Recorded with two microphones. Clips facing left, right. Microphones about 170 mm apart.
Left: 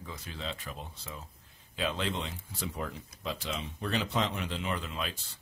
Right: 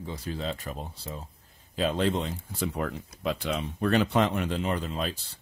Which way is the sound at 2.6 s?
60° right (ahead or behind).